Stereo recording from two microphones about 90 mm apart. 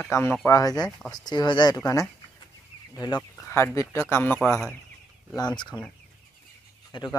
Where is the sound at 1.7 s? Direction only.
40° left (ahead or behind).